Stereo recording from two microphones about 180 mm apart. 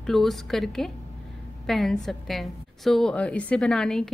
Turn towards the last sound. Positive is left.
turn(degrees=0)  # may be behind; listen again after turning